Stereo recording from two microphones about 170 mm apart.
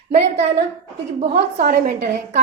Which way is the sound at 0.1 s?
40° right (ahead or behind).